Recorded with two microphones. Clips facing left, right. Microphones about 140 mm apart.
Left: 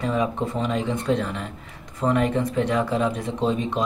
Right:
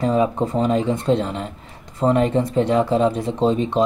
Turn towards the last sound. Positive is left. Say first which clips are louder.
# right 5 dB
turn(degrees=-30)  # may be behind; listen again after turning